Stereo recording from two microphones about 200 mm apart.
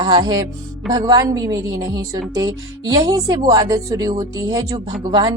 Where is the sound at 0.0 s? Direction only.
20° right (ahead or behind).